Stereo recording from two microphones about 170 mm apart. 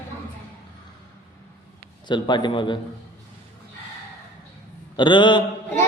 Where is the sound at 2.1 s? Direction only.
25° left (ahead or behind).